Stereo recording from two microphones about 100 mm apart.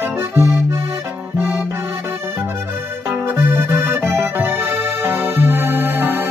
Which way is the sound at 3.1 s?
25° right (ahead or behind).